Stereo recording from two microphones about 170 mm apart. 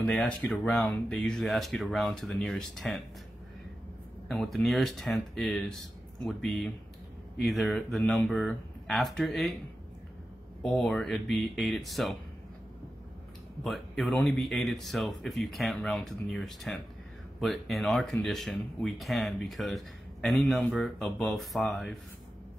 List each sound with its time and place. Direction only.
0.0 s speech: 5° left (ahead or behind)
4.3 s speech: centre (ahead or behind)
10.6 s speech: 5° left (ahead or behind)
13.7 s speech: centre (ahead or behind)